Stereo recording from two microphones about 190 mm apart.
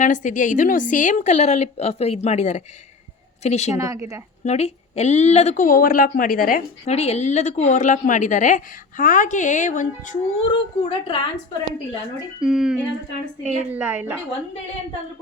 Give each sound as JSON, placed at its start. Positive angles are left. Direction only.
{"t": 0.0, "sound": "a woman's voice", "side_deg": 40}
{"t": 3.8, "sound": "a woman's voice", "side_deg": -15}
{"t": 4.4, "sound": "a woman's voice", "side_deg": 35}
{"t": 6.9, "sound": "a woman's voice", "side_deg": 35}
{"t": 10.8, "sound": "a woman's voice", "side_deg": 30}
{"t": 12.4, "sound": "a woman's voice", "side_deg": -5}